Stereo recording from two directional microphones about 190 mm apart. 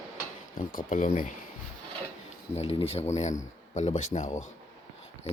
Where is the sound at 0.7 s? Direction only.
45° left (ahead or behind).